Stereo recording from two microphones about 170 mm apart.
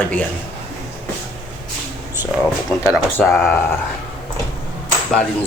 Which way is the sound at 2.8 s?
15° left (ahead or behind).